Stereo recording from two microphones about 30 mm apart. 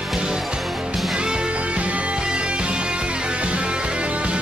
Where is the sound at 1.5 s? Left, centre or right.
Right.